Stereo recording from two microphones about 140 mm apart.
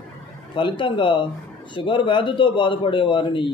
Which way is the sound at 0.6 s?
35° left (ahead or behind).